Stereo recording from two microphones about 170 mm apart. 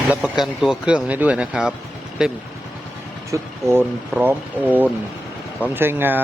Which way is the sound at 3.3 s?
15° right (ahead or behind).